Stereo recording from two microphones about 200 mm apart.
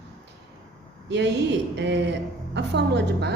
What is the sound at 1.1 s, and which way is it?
A woman's voice, 60° right (ahead or behind).